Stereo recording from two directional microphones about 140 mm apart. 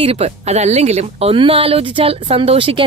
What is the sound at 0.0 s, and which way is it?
Speech, 45° right (ahead or behind).